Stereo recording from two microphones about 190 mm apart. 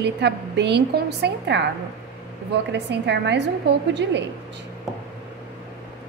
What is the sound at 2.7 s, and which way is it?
Speech, 65° right (ahead or behind).